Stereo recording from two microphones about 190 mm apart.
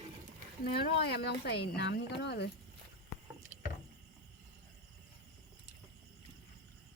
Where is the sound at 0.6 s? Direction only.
60° left (ahead or behind).